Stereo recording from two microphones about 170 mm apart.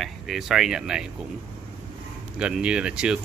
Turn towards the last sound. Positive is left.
turn(degrees=-5)  # may be behind; listen again after turning